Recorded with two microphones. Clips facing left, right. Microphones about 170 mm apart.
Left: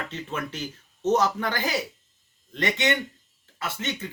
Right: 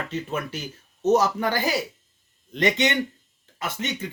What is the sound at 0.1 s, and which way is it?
Speech, 10° right (ahead or behind).